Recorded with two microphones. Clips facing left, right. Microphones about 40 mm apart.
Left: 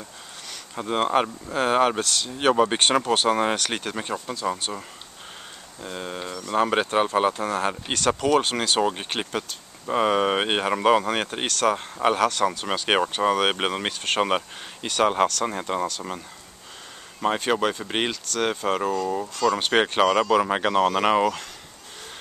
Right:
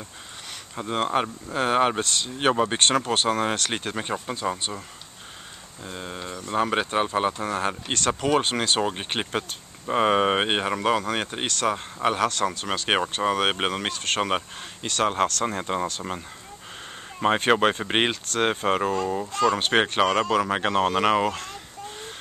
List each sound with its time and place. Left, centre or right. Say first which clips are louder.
0.7 s speech: left 2 dB; centre
3.8 s speech: even; centre
4.7 s speech: left 2 dB; centre
8.2 s speech: even; centre
9.1 s speech: right 1 dB; centre
10.2 s speech: even; centre
17.5 s speech: right 3 dB; right
19.5 s speech: even; centre
20.3 s speech: left 2 dB; centre